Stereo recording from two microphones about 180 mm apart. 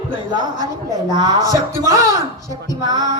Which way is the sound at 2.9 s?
20° right (ahead or behind).